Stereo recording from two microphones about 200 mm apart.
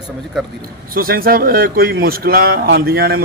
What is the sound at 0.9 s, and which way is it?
Speech, 45° right (ahead or behind).